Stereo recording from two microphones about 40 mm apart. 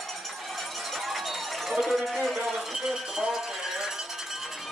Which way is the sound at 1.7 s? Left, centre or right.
Centre.